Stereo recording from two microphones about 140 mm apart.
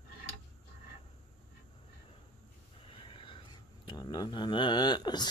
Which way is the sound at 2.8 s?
40° left (ahead or behind).